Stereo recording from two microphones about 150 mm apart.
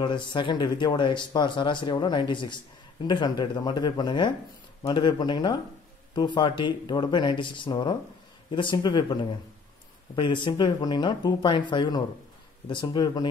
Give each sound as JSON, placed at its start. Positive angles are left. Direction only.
{"t": 0.0, "sound": "speech", "side_deg": 30}